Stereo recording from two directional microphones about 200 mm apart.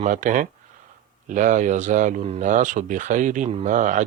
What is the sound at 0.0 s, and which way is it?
Speech, 40° right (ahead or behind).